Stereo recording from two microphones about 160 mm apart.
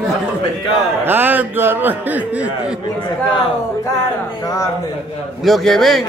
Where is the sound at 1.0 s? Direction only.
10° right (ahead or behind).